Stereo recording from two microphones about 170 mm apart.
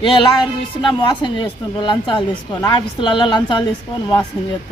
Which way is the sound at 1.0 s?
30° left (ahead or behind).